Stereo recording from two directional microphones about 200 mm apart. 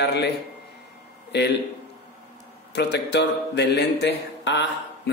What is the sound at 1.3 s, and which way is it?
Speech, 55° left (ahead or behind).